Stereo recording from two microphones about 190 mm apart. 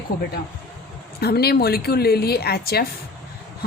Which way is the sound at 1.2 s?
55° left (ahead or behind).